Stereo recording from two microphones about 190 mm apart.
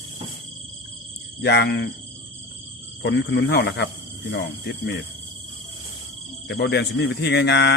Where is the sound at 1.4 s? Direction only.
60° left (ahead or behind).